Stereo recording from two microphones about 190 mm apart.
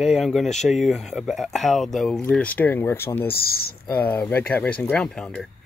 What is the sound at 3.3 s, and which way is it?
Speech, 55° left (ahead or behind).